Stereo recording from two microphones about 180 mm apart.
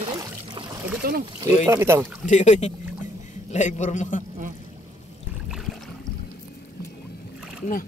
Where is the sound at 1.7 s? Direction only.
15° right (ahead or behind).